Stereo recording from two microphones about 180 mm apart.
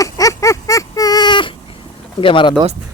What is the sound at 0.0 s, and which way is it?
Baby cry, 20° left (ahead or behind).